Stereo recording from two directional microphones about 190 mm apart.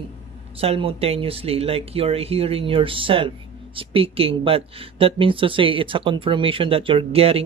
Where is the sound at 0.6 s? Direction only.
30° right (ahead or behind).